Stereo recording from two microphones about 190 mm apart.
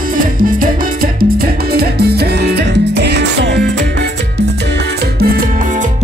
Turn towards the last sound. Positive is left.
turn(degrees=-55)  # may be behind; listen again after turning